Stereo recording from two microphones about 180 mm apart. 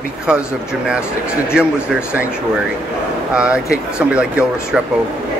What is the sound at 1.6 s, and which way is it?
Speech, 5° right (ahead or behind).